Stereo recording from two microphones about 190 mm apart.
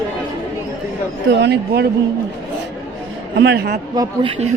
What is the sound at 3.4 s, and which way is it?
Speech, 60° right (ahead or behind).